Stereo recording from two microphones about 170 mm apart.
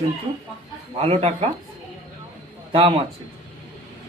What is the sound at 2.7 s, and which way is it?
Speech, 30° right (ahead or behind).